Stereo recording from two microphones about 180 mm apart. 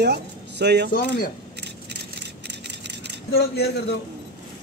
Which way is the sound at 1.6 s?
70° right (ahead or behind).